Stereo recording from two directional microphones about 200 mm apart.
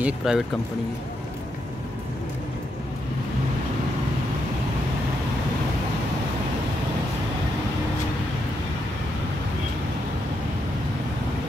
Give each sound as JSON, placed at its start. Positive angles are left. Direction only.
{"t": 0.0, "sound": "speech", "side_deg": 0}